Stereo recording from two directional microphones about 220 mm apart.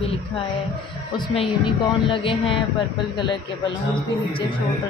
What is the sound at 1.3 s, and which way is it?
Speech, 25° left (ahead or behind).